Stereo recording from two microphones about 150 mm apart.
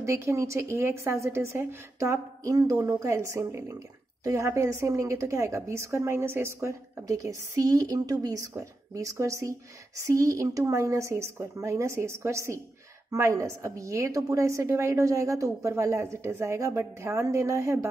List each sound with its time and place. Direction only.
0.0 s a woman's voice: 20° right (ahead or behind)